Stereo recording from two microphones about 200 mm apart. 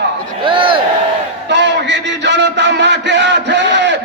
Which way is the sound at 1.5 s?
60° right (ahead or behind).